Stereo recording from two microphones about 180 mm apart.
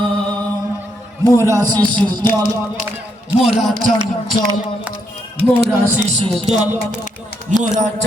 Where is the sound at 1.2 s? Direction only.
20° right (ahead or behind).